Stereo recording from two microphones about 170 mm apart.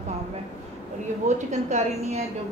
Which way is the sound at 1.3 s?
45° right (ahead or behind).